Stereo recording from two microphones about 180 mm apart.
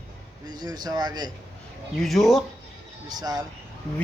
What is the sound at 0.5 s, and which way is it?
Speech, 20° right (ahead or behind).